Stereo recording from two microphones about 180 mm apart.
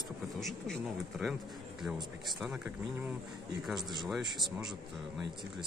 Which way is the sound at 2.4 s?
5° right (ahead or behind).